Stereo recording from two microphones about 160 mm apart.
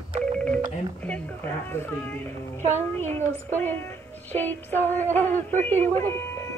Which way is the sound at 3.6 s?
15° left (ahead or behind).